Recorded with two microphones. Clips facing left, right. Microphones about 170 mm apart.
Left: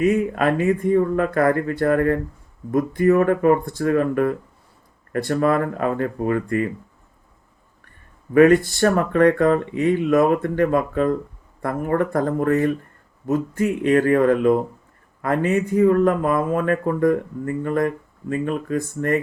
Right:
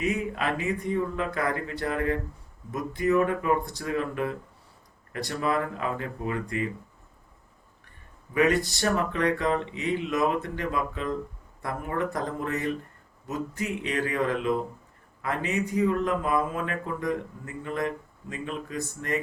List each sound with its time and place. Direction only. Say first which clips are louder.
0.0 s speech: left 9 dB; 50° left (ahead or behind)
8.3 s speech: left 10 dB; 50° left (ahead or behind)